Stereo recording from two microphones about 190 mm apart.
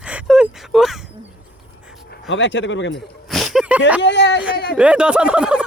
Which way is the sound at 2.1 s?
70° left (ahead or behind).